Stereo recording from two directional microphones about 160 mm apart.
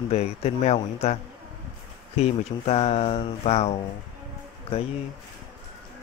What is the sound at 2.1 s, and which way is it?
Speech, 40° left (ahead or behind).